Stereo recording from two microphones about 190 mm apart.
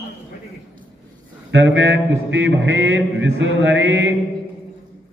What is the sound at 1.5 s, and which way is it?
Speech, 75° right (ahead or behind).